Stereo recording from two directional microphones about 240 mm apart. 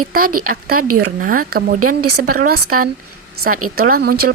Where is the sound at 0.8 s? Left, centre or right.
Right.